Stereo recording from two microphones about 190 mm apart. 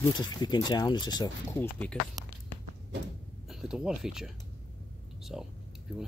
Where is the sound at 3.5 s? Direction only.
5° right (ahead or behind).